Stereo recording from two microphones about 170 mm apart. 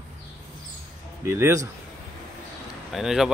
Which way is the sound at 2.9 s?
Centre (ahead or behind).